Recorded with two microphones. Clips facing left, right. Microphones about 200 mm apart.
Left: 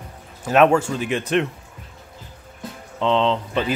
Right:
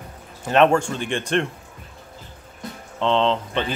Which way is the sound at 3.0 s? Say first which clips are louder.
Left 1 dB; centre (ahead or behind).